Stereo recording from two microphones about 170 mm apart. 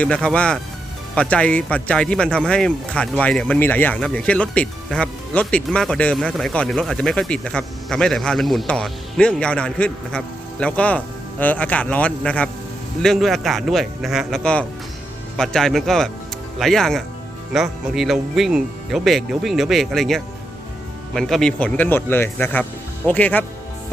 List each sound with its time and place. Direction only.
0.0 s speech: 5° left (ahead or behind)